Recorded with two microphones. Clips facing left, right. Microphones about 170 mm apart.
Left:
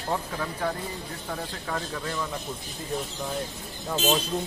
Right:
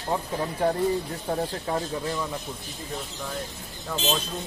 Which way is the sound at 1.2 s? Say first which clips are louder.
Right 5 dB; 30° right (ahead or behind).